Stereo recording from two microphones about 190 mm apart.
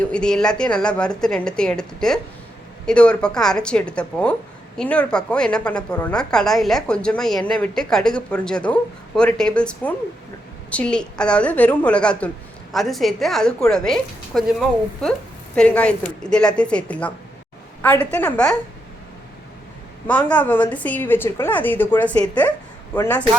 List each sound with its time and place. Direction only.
0.0 s a woman's voice: 5° left (ahead or behind)
18.1 s a woman's voice: 10° left (ahead or behind)
20.1 s a woman's voice: 5° left (ahead or behind)